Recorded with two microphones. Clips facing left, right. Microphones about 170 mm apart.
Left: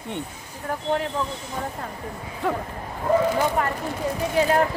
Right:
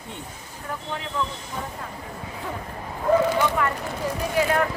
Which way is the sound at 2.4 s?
70° left (ahead or behind).